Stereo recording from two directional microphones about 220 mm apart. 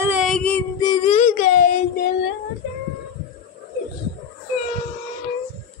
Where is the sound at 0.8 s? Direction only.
20° left (ahead or behind).